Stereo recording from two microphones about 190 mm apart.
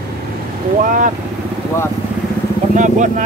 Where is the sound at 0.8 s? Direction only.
45° right (ahead or behind).